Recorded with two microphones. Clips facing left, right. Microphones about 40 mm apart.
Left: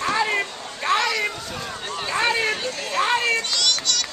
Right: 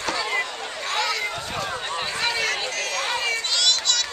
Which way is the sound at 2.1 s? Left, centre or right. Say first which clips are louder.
Left 6 dB; left.